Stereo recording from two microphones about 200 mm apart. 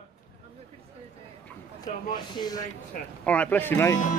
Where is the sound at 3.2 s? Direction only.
5° left (ahead or behind).